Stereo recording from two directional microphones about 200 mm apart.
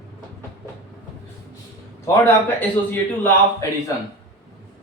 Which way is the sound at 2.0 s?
10° left (ahead or behind).